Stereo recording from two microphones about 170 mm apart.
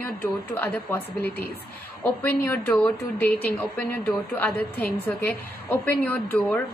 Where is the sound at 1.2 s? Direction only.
65° left (ahead or behind).